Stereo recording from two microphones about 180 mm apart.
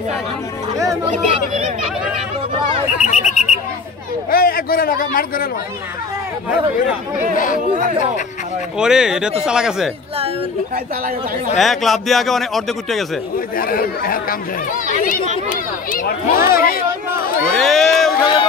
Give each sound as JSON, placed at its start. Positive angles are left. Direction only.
{"t": 3.0, "sound": "bird", "side_deg": 40}
{"t": 4.3, "sound": "speech", "side_deg": 55}
{"t": 8.7, "sound": "a man's voice", "side_deg": -5}
{"t": 11.5, "sound": "a man's voice", "side_deg": 0}
{"t": 13.6, "sound": "speech", "side_deg": 55}
{"t": 17.6, "sound": "a man's voice", "side_deg": 0}
{"t": 18.2, "sound": "speech", "side_deg": 25}